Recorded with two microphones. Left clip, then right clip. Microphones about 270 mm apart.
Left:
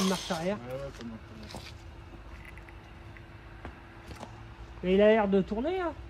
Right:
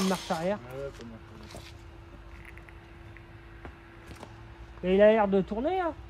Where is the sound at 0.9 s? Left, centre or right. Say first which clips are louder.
Left 2 dB; centre.